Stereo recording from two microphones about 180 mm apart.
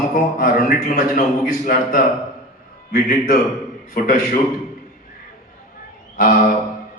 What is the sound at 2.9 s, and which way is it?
Speech, 50° left (ahead or behind).